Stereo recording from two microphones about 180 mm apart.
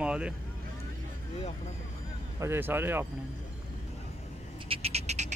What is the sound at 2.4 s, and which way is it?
Speech, 10° right (ahead or behind).